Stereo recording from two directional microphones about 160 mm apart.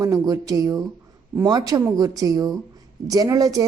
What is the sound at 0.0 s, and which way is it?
A man's voice, 20° right (ahead or behind).